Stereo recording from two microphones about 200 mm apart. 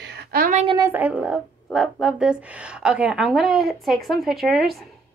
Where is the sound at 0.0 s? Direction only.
55° right (ahead or behind).